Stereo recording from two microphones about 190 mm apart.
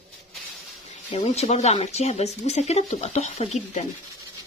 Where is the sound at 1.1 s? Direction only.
35° left (ahead or behind).